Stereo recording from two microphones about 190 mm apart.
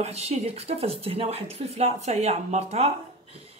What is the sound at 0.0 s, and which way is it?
A woman's voice, 35° right (ahead or behind).